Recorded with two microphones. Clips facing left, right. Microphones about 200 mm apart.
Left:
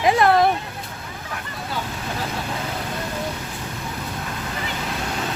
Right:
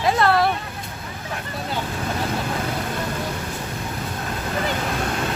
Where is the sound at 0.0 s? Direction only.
15° left (ahead or behind).